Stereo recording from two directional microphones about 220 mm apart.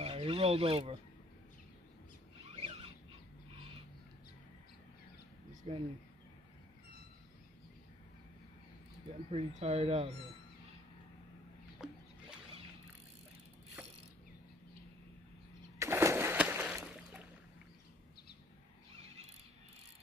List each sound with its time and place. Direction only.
0.0 s speech: 25° right (ahead or behind)
2.4 s rodents: 25° right (ahead or behind)
5.7 s speech: 30° right (ahead or behind)
9.3 s speech: 30° right (ahead or behind)
11.8 s wild animals: centre (ahead or behind)
15.8 s a sound: 10° right (ahead or behind)